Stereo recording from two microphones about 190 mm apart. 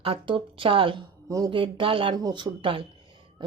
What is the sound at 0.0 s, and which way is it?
A woman's voice, 30° right (ahead or behind).